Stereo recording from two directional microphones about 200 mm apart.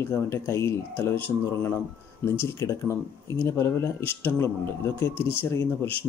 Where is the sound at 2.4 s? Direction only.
15° left (ahead or behind).